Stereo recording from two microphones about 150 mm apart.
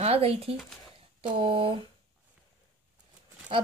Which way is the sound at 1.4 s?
35° right (ahead or behind).